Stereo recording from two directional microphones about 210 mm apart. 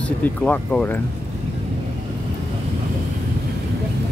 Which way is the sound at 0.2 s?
5° left (ahead or behind).